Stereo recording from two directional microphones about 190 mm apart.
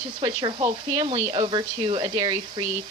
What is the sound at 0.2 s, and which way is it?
Speech, 25° right (ahead or behind).